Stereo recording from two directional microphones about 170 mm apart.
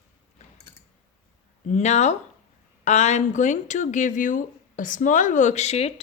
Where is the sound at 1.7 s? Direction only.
40° left (ahead or behind).